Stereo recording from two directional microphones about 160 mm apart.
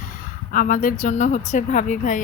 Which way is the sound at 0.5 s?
60° left (ahead or behind).